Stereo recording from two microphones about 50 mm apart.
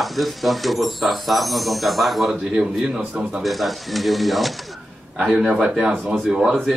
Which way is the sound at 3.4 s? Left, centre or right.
Centre.